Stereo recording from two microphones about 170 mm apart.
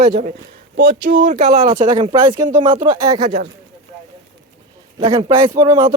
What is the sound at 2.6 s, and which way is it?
Speech, 30° right (ahead or behind).